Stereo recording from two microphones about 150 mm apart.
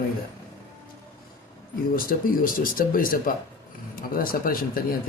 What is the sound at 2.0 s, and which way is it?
Speech, 70° left (ahead or behind).